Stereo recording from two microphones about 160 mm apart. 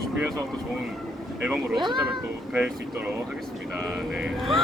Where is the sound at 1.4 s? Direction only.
5° right (ahead or behind).